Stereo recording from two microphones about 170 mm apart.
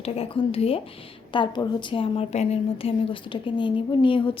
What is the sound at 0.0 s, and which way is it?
A woman's voice, 35° left (ahead or behind).